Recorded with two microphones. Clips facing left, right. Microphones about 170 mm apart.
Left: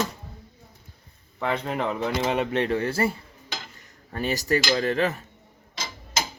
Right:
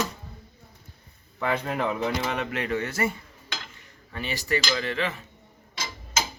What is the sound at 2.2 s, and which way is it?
Cutlery, 30° left (ahead or behind).